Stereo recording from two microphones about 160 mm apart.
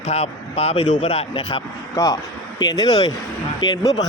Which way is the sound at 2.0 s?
20° left (ahead or behind).